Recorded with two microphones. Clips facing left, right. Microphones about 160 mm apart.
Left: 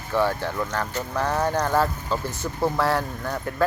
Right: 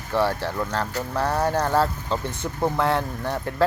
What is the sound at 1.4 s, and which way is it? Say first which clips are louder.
Speech: right 1 dB; 30° right (ahead or behind).